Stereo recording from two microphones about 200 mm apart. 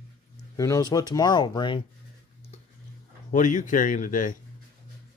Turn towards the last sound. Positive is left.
turn(degrees=40)  # may be behind; listen again after turning